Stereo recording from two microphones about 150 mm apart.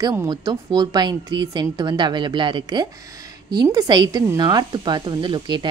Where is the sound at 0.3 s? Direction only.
25° right (ahead or behind).